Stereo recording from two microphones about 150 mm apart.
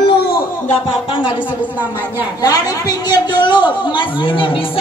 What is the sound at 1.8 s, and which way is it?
Speech, 10° right (ahead or behind).